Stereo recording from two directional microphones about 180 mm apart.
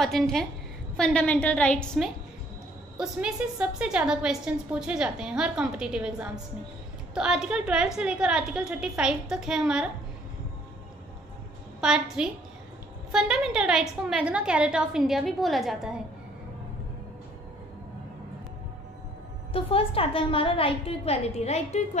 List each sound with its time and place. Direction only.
0.0 s a woman's voice: centre (ahead or behind)
11.8 s a woman's voice: 5° right (ahead or behind)
19.5 s a woman's voice: 30° left (ahead or behind)